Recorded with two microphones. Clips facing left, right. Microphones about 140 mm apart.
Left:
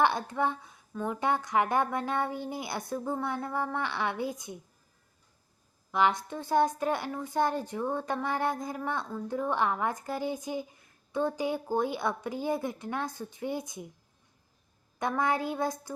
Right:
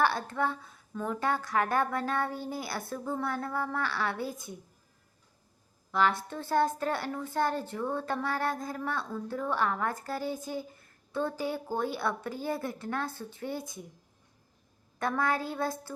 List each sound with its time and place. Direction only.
0.0 s a woman's voice: 20° left (ahead or behind)
5.9 s a woman's voice: 15° left (ahead or behind)
14.9 s a woman's voice: 15° left (ahead or behind)